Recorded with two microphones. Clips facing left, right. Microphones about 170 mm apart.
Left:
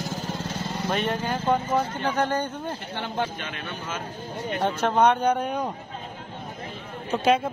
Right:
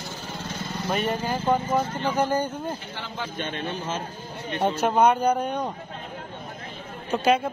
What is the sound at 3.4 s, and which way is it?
Speech, 30° right (ahead or behind).